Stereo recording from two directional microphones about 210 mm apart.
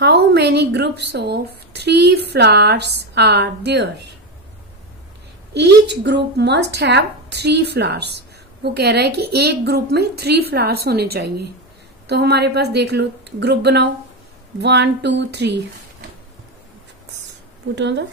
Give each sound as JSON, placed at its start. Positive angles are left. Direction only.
{"t": 0.0, "sound": "a woman's voice", "side_deg": -50}
{"t": 5.6, "sound": "a woman's voice", "side_deg": -55}
{"t": 17.7, "sound": "speech", "side_deg": -55}